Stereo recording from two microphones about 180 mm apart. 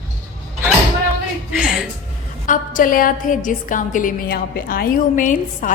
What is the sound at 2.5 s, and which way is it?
A woman's voice, 50° left (ahead or behind).